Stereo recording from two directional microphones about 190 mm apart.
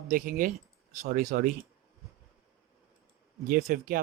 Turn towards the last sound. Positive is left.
turn(degrees=-45)  # may be behind; listen again after turning